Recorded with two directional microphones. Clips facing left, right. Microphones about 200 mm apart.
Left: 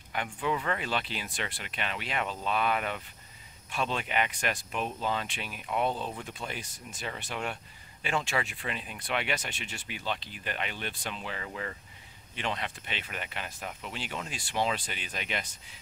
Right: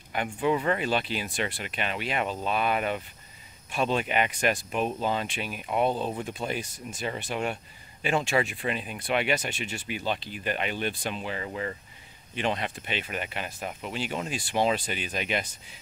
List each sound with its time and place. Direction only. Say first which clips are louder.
0.1 s speech: right 5 dB; 15° right (ahead or behind)